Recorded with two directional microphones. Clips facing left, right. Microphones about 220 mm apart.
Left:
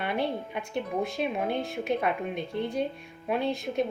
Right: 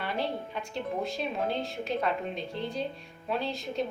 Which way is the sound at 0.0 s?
60° left (ahead or behind).